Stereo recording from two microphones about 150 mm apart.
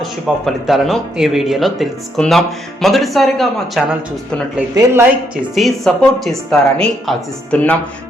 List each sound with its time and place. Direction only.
0.0 s speech: centre (ahead or behind)
4.7 s speech: 25° right (ahead or behind)
5.5 s speech: centre (ahead or behind)